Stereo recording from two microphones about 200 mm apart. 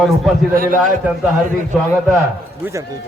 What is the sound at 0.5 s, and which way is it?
Speech, 45° right (ahead or behind).